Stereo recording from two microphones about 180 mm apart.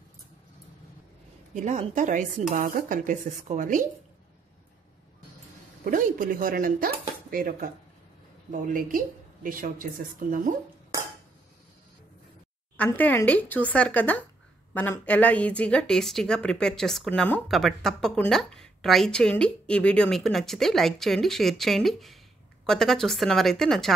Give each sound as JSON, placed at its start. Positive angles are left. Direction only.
{"t": 1.5, "sound": "a woman's voice", "side_deg": -40}
{"t": 5.9, "sound": "speech", "side_deg": -50}
{"t": 12.7, "sound": "a woman's voice", "side_deg": 10}